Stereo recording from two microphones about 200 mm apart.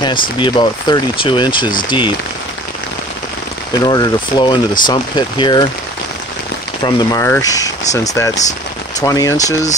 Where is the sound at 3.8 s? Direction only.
20° left (ahead or behind).